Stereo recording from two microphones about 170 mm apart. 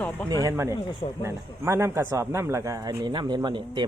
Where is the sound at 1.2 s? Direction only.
15° right (ahead or behind).